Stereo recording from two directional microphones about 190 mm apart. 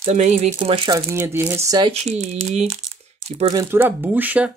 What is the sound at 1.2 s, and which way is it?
Speech, 10° right (ahead or behind).